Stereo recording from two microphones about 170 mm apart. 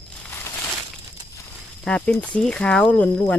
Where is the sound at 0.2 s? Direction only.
10° left (ahead or behind).